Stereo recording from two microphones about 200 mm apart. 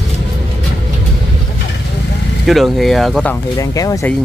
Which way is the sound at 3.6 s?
15° left (ahead or behind).